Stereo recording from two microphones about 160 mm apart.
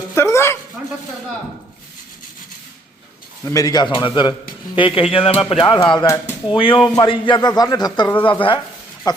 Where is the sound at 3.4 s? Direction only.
20° left (ahead or behind).